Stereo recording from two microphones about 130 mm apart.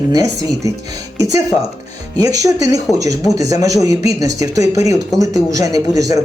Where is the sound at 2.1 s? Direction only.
30° right (ahead or behind).